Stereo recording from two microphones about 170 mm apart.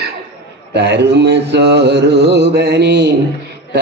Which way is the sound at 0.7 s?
90° right.